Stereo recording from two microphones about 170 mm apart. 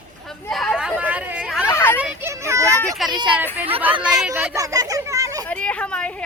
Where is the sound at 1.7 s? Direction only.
15° left (ahead or behind).